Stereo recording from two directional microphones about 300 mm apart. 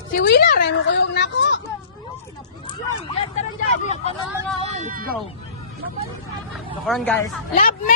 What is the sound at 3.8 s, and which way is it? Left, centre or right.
Speech, left.